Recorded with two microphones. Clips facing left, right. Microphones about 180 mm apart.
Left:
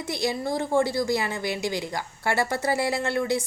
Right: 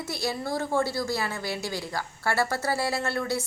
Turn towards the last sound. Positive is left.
turn(degrees=15)  # may be behind; listen again after turning